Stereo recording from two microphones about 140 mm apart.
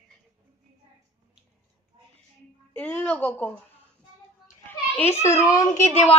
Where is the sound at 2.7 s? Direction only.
10° left (ahead or behind).